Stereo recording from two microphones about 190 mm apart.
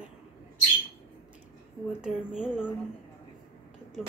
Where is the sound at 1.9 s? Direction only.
5° right (ahead or behind).